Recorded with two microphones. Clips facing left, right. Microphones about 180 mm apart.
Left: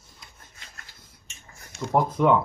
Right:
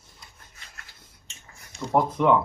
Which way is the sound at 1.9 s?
Centre (ahead or behind).